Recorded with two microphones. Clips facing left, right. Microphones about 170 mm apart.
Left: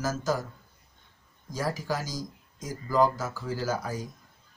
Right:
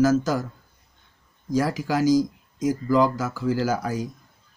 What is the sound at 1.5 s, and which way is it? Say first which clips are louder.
Speech: right 8 dB; 75° right (ahead or behind).